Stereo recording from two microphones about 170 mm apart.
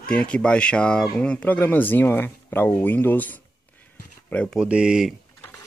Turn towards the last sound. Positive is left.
turn(degrees=-5)  # may be behind; listen again after turning